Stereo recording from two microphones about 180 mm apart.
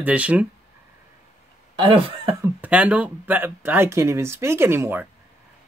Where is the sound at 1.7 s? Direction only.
25° right (ahead or behind).